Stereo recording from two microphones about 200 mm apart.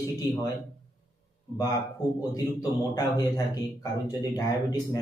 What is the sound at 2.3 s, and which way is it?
A man's voice, 20° left (ahead or behind).